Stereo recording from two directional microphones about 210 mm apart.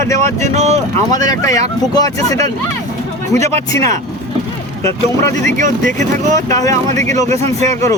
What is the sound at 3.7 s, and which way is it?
Speech, 15° left (ahead or behind).